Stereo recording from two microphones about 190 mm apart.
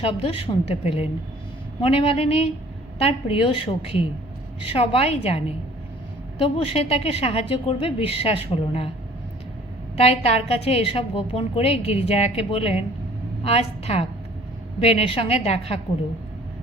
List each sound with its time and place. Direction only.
0.0 s a woman's voice: 30° left (ahead or behind)
10.0 s a woman's voice: 30° left (ahead or behind)